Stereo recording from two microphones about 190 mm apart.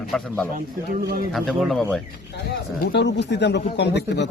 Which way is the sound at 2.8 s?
65° left (ahead or behind).